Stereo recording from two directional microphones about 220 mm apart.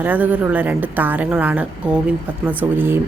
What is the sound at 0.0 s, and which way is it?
A woman's voice, 10° right (ahead or behind).